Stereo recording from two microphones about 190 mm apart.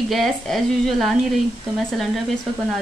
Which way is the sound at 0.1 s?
Centre (ahead or behind).